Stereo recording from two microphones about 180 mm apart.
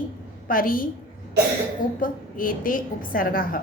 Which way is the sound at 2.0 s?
50° left (ahead or behind).